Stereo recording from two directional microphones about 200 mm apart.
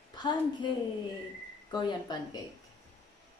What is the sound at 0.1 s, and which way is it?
Speech, 20° left (ahead or behind).